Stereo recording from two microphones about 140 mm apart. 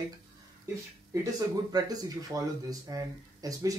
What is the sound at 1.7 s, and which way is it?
Speech, 30° right (ahead or behind).